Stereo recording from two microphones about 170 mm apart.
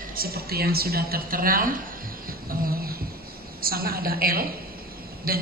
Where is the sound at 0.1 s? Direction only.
60° right (ahead or behind).